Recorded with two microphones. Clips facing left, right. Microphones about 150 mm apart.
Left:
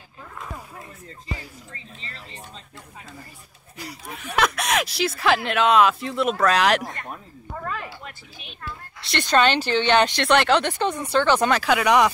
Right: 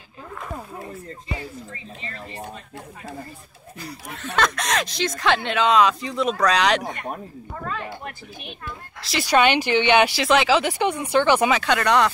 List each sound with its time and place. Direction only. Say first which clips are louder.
1.7 s speech: right 5 dB; 30° left (ahead or behind)
2.1 s speech: right 7 dB; 50° right (ahead or behind)
3.8 s speech: right 1 dB; 10° left (ahead or behind)
8.0 s speech: right 5 dB; 50° right (ahead or behind)
9.0 s speech: right 1 dB; 5° right (ahead or behind)
11.5 s speech: left 1 dB; 5° left (ahead or behind)